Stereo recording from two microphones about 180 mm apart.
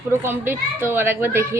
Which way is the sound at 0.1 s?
10° right (ahead or behind).